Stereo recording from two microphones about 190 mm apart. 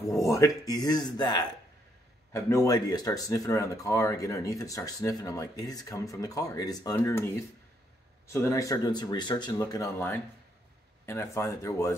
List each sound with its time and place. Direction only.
0.1 s speech: 15° left (ahead or behind)
8.3 s speech: 15° left (ahead or behind)